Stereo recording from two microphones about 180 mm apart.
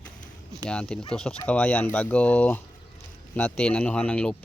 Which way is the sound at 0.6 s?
5° left (ahead or behind).